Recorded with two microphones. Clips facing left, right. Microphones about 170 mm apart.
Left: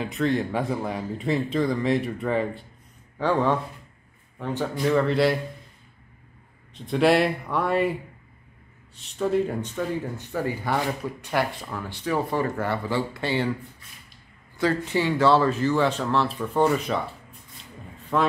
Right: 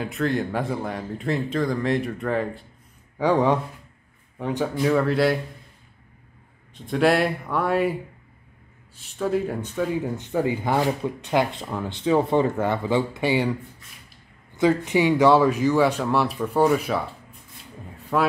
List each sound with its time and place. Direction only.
0.0 s a man's voice: centre (ahead or behind)
3.2 s a man's voice: 15° right (ahead or behind)
6.7 s a man's voice: centre (ahead or behind)
14.5 s a man's voice: 20° right (ahead or behind)
18.1 s a man's voice: 5° right (ahead or behind)